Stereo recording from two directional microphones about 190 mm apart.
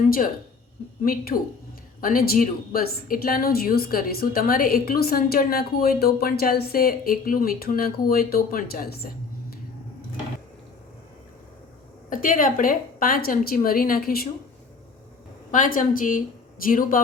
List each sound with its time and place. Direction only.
1.0 s a woman's voice: 50° left (ahead or behind)
12.1 s a woman's voice: 45° left (ahead or behind)
15.5 s a woman's voice: 45° left (ahead or behind)